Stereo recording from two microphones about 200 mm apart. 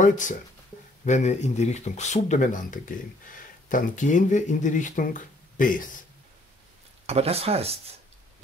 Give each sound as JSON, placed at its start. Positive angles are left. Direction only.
{"t": 0.0, "sound": "speech", "side_deg": 40}
{"t": 7.1, "sound": "speech", "side_deg": -30}